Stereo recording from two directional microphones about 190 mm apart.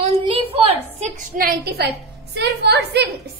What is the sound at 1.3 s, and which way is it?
A woman's voice, 50° right (ahead or behind).